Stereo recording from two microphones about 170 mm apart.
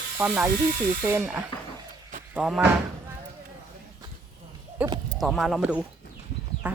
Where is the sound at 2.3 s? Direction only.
5° right (ahead or behind).